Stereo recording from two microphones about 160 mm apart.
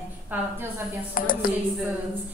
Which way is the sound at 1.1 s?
60° left (ahead or behind).